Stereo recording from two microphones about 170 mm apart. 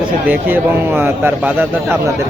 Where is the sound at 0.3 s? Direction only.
10° right (ahead or behind).